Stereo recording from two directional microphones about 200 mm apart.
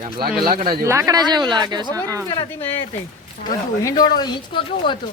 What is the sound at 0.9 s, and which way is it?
Speech, 15° right (ahead or behind).